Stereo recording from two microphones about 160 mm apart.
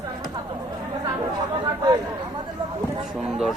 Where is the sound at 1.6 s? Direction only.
25° right (ahead or behind).